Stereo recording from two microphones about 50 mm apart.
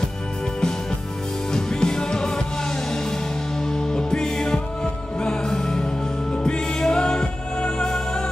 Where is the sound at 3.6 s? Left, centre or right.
Centre.